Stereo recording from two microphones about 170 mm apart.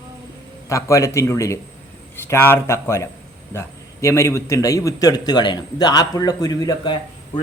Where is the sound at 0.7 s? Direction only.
15° left (ahead or behind).